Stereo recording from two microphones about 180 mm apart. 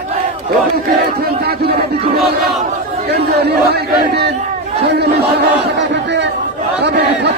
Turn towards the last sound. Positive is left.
turn(degrees=-65)  # may be behind; listen again after turning